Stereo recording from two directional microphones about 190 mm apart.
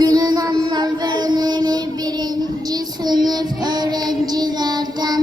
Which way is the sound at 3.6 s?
20° right (ahead or behind).